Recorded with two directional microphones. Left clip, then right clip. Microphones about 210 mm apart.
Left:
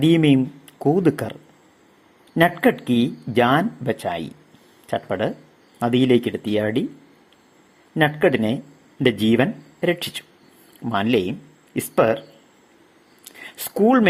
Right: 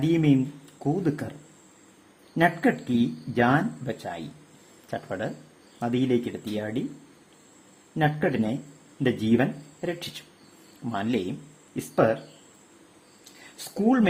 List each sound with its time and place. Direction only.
0.0 s speech: 25° left (ahead or behind)
7.9 s speech: 20° left (ahead or behind)
13.7 s speech: 25° left (ahead or behind)